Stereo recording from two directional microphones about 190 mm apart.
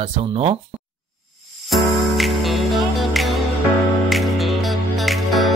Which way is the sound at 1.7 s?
Centre (ahead or behind).